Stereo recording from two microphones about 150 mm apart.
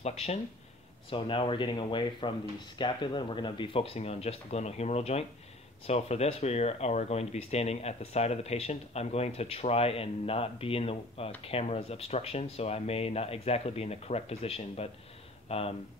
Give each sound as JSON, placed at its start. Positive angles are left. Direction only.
{"t": 1.1, "sound": "speech", "side_deg": 35}